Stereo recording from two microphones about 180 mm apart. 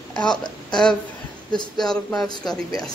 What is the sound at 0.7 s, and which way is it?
Speech, 5° left (ahead or behind).